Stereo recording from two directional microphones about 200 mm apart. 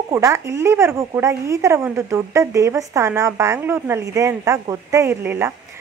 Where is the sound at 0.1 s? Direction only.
15° right (ahead or behind).